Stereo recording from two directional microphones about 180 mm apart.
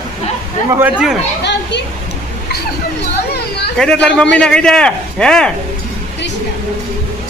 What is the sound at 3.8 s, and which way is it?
Speech, 5° left (ahead or behind).